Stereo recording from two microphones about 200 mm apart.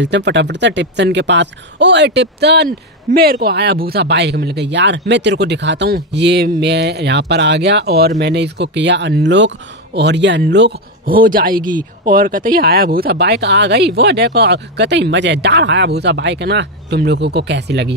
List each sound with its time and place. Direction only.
0.0 s speech: 60° right (ahead or behind)